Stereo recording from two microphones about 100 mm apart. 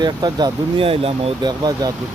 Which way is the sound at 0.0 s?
45° right (ahead or behind).